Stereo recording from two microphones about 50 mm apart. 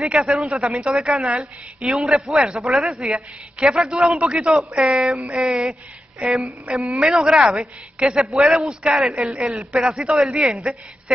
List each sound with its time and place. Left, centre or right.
0.2 s a woman's voice: centre
6.2 s a woman's voice: centre
6.7 s a woman's voice: centre
10.6 s a woman's voice: centre